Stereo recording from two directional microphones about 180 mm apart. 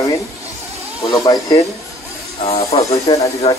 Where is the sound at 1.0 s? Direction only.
20° left (ahead or behind).